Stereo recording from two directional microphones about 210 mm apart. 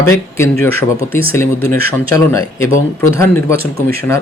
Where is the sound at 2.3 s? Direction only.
10° left (ahead or behind).